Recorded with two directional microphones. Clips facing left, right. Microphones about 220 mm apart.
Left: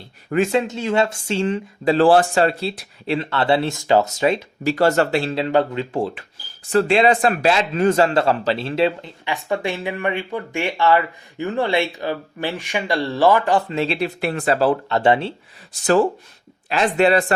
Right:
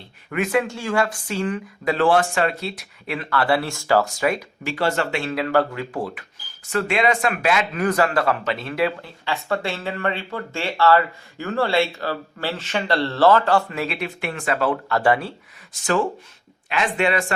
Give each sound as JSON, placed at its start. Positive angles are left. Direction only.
{"t": 0.3, "sound": "a man's voice", "side_deg": 30}
{"t": 4.6, "sound": "a man's voice", "side_deg": 40}
{"t": 15.7, "sound": "speech", "side_deg": 35}